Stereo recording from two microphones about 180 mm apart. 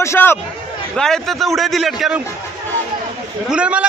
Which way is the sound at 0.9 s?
5° left (ahead or behind).